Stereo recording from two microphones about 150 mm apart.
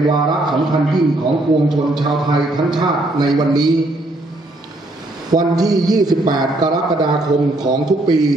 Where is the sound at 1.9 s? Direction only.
30° right (ahead or behind).